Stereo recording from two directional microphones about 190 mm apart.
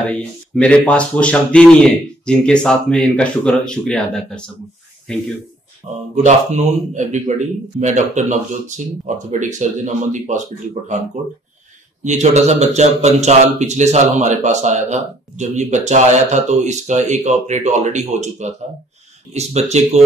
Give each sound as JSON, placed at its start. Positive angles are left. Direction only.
{"t": 0.0, "sound": "speech", "side_deg": 5}
{"t": 6.1, "sound": "a man's voice", "side_deg": -35}
{"t": 12.0, "sound": "a man's voice", "side_deg": -35}